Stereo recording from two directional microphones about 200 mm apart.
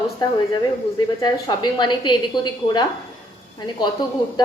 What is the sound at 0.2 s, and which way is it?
A woman's voice, 20° left (ahead or behind).